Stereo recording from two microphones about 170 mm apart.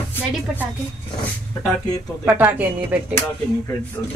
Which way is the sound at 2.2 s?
10° right (ahead or behind).